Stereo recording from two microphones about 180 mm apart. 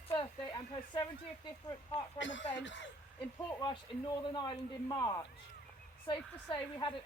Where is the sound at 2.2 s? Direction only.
90° left.